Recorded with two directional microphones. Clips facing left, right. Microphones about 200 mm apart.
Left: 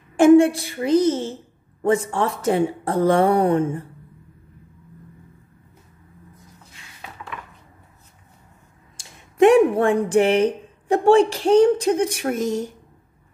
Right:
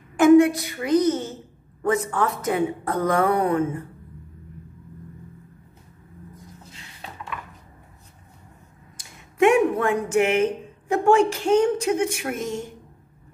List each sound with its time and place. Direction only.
0.2 s speech: 30° left (ahead or behind)
8.9 s speech: 30° left (ahead or behind)